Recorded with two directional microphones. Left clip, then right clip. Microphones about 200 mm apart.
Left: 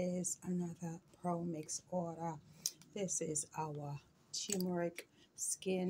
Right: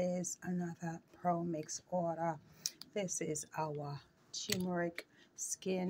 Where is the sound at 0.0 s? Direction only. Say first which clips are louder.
Right 3 dB; 10° right (ahead or behind).